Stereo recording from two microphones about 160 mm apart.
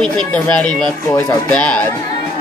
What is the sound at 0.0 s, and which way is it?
Speech, 5° left (ahead or behind).